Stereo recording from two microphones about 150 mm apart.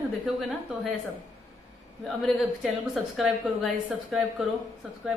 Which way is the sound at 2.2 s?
5° left (ahead or behind).